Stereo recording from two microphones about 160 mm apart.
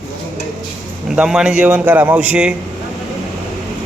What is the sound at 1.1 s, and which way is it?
A man's voice, 5° right (ahead or behind).